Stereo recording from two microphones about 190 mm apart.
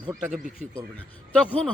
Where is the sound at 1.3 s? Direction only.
5° left (ahead or behind).